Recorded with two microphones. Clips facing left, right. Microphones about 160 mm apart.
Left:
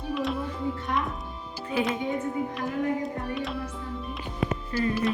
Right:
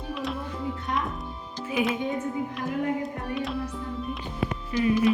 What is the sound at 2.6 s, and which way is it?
Speech, centre (ahead or behind).